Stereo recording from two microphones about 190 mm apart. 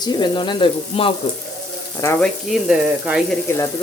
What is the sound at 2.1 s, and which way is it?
Speech, centre (ahead or behind).